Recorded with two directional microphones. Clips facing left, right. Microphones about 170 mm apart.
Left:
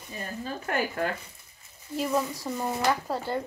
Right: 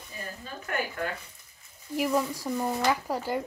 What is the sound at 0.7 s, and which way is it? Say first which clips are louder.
Speech: left 3 dB; 45° left (ahead or behind).